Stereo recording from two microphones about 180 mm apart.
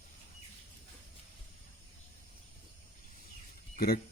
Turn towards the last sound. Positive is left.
turn(degrees=55)  # may be behind; listen again after turning